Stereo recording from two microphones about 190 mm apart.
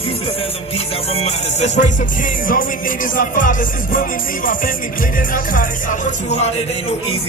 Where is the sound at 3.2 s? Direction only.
45° left (ahead or behind).